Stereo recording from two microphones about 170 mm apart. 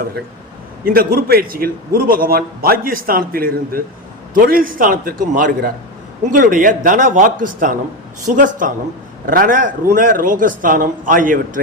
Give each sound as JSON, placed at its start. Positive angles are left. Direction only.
{"t": 0.9, "sound": "a man's voice", "side_deg": -60}